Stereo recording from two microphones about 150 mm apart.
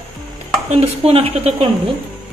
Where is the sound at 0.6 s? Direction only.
40° right (ahead or behind).